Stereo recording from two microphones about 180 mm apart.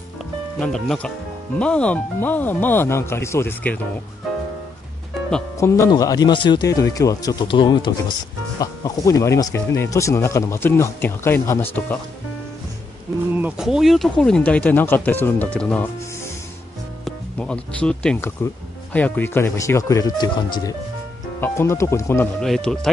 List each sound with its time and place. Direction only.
0.6 s speech: 5° left (ahead or behind)
5.6 s speech: 15° left (ahead or behind)
13.4 s speech: 5° right (ahead or behind)
17.0 s speech: 5° left (ahead or behind)
22.4 s speech: 5° left (ahead or behind)